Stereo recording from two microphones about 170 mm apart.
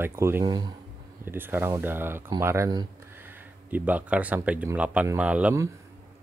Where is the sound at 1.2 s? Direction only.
10° right (ahead or behind).